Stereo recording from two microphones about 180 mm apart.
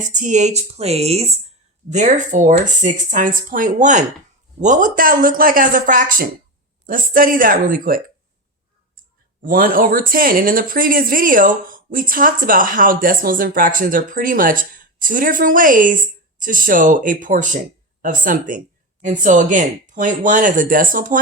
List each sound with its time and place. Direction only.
0.1 s speech: 45° right (ahead or behind)
9.4 s speech: 50° right (ahead or behind)